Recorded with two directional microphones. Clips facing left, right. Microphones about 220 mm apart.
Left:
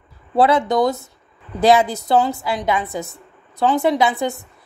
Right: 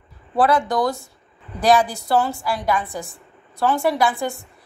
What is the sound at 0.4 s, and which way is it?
A woman's voice, 25° left (ahead or behind).